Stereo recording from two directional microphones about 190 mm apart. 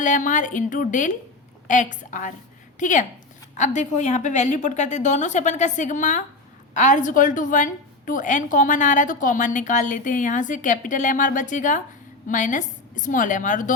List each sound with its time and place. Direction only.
0.0 s a woman's voice: 40° left (ahead or behind)